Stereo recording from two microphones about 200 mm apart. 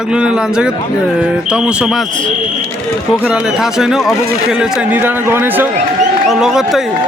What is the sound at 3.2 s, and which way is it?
Speech, 5° right (ahead or behind).